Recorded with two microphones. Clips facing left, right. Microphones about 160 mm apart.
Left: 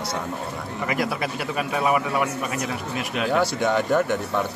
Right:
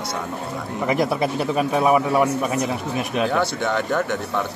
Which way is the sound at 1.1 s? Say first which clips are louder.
Right 6 dB; 35° right (ahead or behind).